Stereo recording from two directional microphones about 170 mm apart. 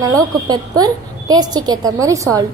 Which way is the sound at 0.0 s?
20° right (ahead or behind).